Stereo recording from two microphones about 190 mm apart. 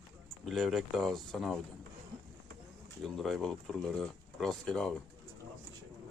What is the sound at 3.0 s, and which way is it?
Speech, centre (ahead or behind).